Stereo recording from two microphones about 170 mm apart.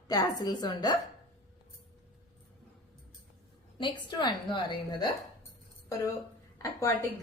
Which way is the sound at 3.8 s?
25° left (ahead or behind).